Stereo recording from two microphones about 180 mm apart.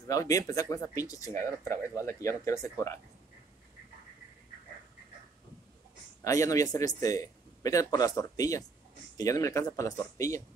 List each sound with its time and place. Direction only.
0.1 s speech: 20° left (ahead or behind)
6.2 s a man's voice: 20° left (ahead or behind)